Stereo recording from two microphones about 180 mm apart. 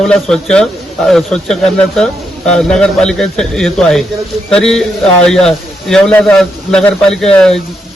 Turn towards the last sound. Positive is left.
turn(degrees=5)  # may be behind; listen again after turning